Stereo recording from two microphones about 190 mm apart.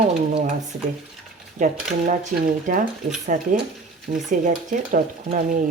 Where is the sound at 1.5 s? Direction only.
45° right (ahead or behind).